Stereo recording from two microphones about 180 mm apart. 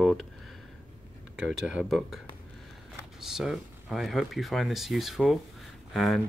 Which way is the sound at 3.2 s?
Centre (ahead or behind).